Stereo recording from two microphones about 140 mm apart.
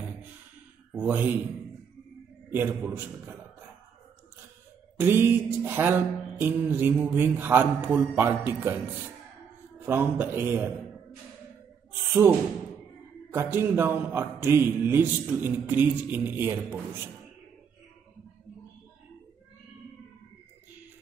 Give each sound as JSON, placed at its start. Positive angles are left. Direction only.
{"t": 0.9, "sound": "a man's voice", "side_deg": -15}
{"t": 2.5, "sound": "a man's voice", "side_deg": -15}
{"t": 4.9, "sound": "a man's voice", "side_deg": -15}
{"t": 9.8, "sound": "a man's voice", "side_deg": -15}
{"t": 12.1, "sound": "a man's voice", "side_deg": -15}